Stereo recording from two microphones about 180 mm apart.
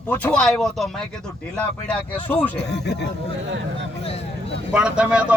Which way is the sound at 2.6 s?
70° left (ahead or behind).